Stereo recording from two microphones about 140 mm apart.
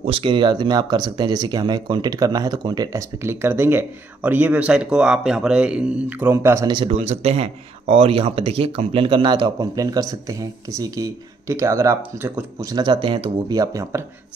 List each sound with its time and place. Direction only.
0.0 s speech: 40° right (ahead or behind); by 6.7 s 20° right (ahead or behind)
6.9 s speech: 50° right (ahead or behind); by 14.0 s 25° right (ahead or behind)